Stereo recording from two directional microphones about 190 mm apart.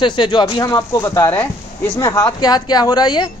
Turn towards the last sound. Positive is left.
turn(degrees=20)  # may be behind; listen again after turning